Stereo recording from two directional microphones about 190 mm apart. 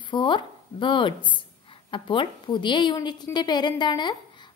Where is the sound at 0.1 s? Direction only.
25° left (ahead or behind).